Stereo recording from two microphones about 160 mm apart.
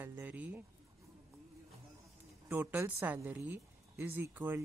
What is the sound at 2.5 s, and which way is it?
A woman's voice, 10° right (ahead or behind).